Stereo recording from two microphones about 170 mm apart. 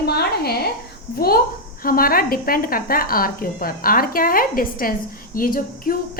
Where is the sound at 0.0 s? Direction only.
65° left (ahead or behind).